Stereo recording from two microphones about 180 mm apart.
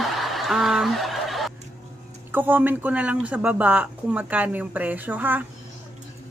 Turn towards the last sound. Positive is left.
turn(degrees=-10)  # may be behind; listen again after turning